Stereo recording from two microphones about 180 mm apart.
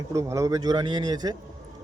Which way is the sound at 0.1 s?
15° right (ahead or behind).